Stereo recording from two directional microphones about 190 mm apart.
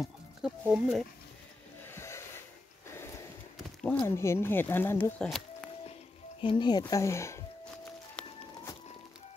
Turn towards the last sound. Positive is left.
turn(degrees=15)  # may be behind; listen again after turning